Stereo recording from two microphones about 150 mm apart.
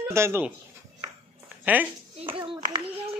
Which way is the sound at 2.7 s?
40° right (ahead or behind).